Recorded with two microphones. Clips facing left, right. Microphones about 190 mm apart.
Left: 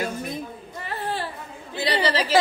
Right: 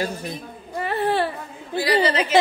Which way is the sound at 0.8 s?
65° right (ahead or behind).